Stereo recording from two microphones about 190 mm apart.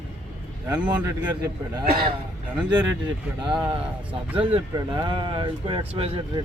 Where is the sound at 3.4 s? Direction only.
25° right (ahead or behind).